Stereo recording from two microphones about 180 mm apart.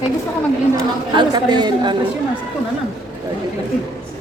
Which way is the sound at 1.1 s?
25° right (ahead or behind).